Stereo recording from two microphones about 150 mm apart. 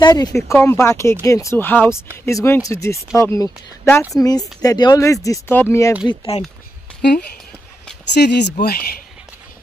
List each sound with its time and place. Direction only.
0.0 s speech: 25° left (ahead or behind)
6.0 s speech: 40° left (ahead or behind)
8.2 s speech: 90° left